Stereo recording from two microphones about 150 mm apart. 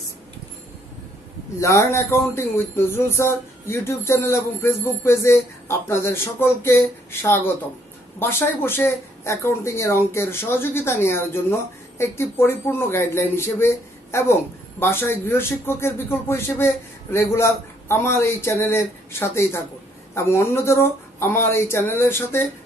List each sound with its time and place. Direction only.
1.6 s speech: 20° left (ahead or behind)